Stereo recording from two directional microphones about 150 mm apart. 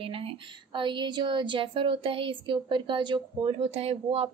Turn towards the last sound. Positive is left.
turn(degrees=-40)  # may be behind; listen again after turning